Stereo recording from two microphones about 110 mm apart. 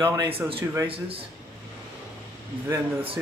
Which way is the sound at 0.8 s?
60° right (ahead or behind).